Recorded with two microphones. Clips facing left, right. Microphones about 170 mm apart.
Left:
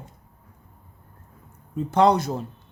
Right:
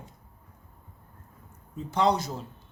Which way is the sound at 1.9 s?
55° left (ahead or behind).